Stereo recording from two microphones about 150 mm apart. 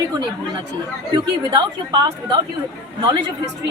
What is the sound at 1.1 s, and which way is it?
A woman's voice, 30° right (ahead or behind).